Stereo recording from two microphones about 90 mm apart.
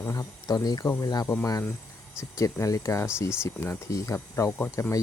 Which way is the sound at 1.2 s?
30° left (ahead or behind).